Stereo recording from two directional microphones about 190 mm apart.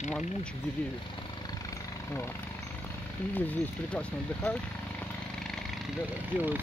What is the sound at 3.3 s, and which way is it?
Speech, 5° left (ahead or behind).